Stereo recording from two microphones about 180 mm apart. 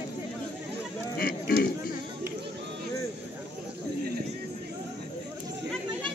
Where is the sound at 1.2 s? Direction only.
55° left (ahead or behind).